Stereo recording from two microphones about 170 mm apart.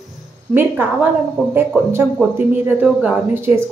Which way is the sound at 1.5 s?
10° right (ahead or behind).